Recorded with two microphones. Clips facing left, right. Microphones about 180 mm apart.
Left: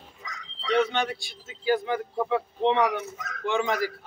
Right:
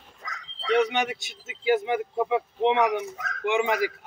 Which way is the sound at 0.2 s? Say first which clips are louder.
Right 1 dB; 50° right (ahead or behind).